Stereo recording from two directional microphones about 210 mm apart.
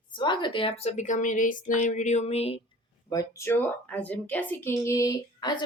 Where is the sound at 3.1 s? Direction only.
15° left (ahead or behind).